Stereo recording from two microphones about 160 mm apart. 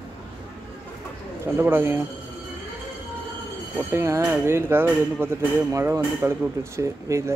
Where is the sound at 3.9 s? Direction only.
15° right (ahead or behind).